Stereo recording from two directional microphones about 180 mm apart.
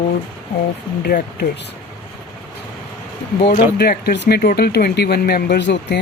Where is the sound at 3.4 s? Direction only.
60° left (ahead or behind).